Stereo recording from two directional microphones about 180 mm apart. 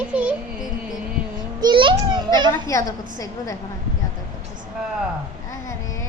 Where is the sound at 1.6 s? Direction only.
25° right (ahead or behind).